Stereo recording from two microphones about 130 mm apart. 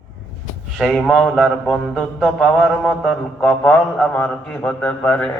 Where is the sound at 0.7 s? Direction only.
Centre (ahead or behind).